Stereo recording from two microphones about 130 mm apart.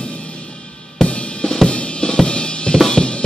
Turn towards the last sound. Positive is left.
turn(degrees=5)  # may be behind; listen again after turning